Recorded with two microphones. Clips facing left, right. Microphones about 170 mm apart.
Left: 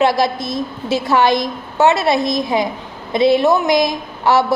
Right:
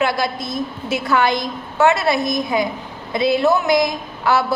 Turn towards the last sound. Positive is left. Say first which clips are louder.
# left 3 dB
turn(degrees=25)  # may be behind; listen again after turning